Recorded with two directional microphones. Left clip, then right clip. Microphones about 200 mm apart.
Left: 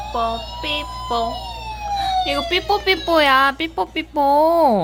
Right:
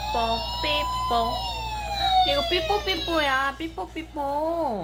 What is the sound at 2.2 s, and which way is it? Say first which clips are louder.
A woman's voice: left 3 dB; 45° left (ahead or behind).